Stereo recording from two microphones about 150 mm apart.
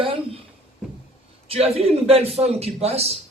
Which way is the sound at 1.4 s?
40° right (ahead or behind).